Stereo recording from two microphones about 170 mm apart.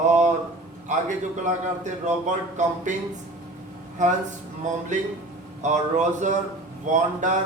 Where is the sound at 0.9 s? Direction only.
45° right (ahead or behind).